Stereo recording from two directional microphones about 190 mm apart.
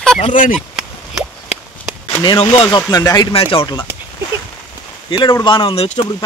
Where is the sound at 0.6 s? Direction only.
5° right (ahead or behind).